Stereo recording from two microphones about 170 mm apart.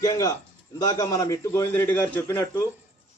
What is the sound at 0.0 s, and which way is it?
A man's voice, 20° left (ahead or behind).